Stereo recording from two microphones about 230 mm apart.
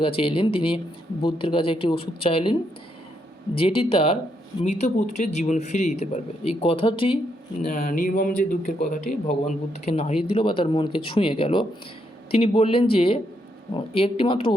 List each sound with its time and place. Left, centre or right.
0.0 s a man's voice: left
3.6 s a man's voice: left
7.7 s a man's voice: left